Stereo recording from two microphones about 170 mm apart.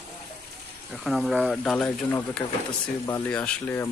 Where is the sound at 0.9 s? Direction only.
Centre (ahead or behind).